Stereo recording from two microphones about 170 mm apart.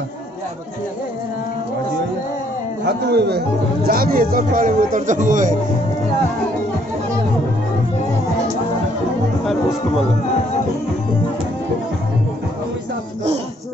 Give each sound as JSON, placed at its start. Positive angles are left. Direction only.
{"t": 3.1, "sound": "speech", "side_deg": -70}